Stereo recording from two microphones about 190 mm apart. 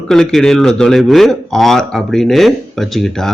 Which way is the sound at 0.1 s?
Centre (ahead or behind).